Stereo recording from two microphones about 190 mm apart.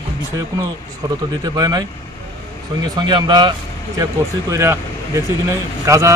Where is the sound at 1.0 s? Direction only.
20° right (ahead or behind).